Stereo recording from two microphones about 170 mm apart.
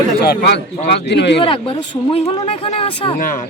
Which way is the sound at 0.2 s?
70° left (ahead or behind).